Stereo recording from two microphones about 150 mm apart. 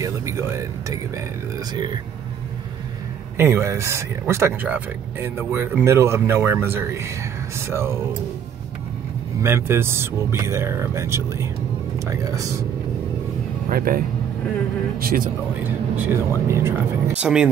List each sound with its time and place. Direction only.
0.0 s speech: 20° right (ahead or behind)
3.3 s speech: 15° right (ahead or behind)
9.4 s speech: 15° right (ahead or behind)
13.7 s speech: 75° right (ahead or behind)
15.6 s speech: 15° right (ahead or behind)
17.2 s speech: 5° right (ahead or behind)